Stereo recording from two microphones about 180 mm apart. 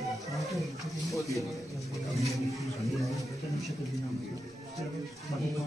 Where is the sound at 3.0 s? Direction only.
Centre (ahead or behind).